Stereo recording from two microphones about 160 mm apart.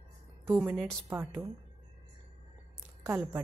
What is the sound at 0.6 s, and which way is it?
Speech, centre (ahead or behind).